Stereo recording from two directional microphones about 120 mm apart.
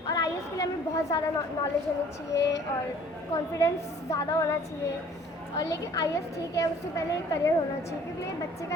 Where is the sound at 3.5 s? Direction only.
25° left (ahead or behind).